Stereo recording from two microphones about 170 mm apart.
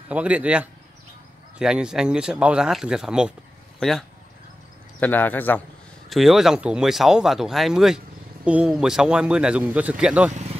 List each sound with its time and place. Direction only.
0.1 s a man's voice: 5° right (ahead or behind)
5.0 s speech: 10° left (ahead or behind)
6.0 s speech: centre (ahead or behind)
10.3 s vehicle: 40° right (ahead or behind)